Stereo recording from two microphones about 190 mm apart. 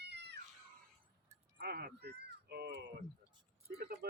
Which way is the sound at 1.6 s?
55° right (ahead or behind).